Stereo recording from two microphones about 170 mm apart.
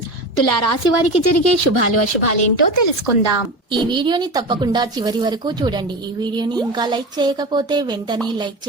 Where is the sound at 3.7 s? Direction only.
30° right (ahead or behind).